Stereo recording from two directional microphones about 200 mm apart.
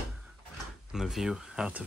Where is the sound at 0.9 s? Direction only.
Centre (ahead or behind).